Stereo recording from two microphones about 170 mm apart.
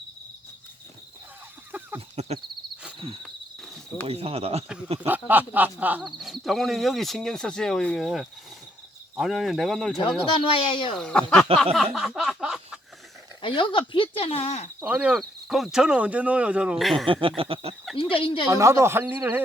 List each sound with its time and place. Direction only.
2.0 s a sound: 35° right (ahead or behind)
3.2 s cricket: centre (ahead or behind)
4.0 s a sound: 35° right (ahead or behind)
4.9 s speech: 10° right (ahead or behind)
10.3 s speech: 30° left (ahead or behind)
10.9 s speech: 5° left (ahead or behind)
11.5 s a sound: 5° left (ahead or behind)
13.4 s speech: 30° left (ahead or behind)
14.8 s speech: 10° right (ahead or behind)
17.1 s a sound: 30° right (ahead or behind)
17.9 s speech: 30° left (ahead or behind)
18.5 s a man's voice: 15° right (ahead or behind)